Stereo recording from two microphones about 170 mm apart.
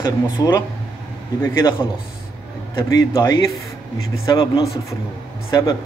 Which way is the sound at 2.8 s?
20° left (ahead or behind).